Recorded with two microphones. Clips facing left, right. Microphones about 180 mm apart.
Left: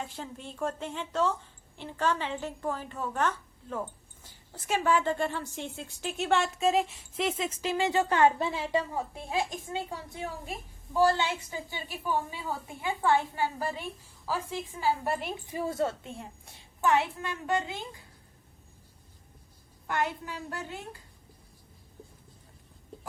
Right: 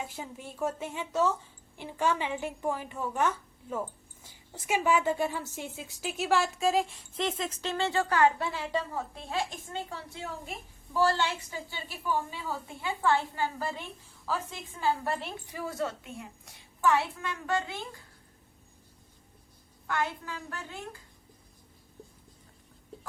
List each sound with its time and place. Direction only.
0.0 s a woman's voice: 10° right (ahead or behind); by 17.8 s 15° left (ahead or behind)
19.9 s a woman's voice: 15° left (ahead or behind)